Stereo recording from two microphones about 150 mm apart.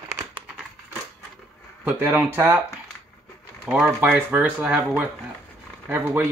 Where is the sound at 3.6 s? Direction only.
10° right (ahead or behind).